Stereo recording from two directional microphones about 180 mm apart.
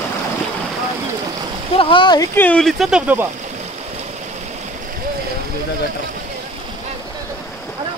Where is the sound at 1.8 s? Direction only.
25° left (ahead or behind).